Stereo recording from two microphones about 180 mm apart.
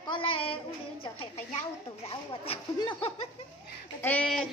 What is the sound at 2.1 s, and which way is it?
Speech, 30° left (ahead or behind).